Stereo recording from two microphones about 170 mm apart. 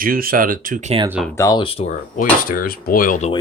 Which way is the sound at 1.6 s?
35° left (ahead or behind).